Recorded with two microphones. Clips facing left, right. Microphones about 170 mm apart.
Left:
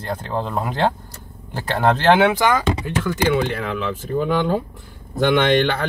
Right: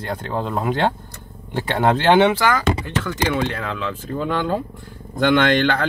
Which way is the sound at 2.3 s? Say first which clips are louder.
Left 1 dB; 20° left (ahead or behind).